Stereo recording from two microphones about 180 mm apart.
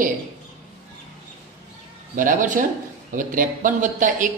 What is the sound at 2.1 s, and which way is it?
Speech, 45° right (ahead or behind).